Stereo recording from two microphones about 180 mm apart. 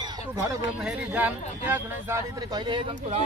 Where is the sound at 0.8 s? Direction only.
10° right (ahead or behind).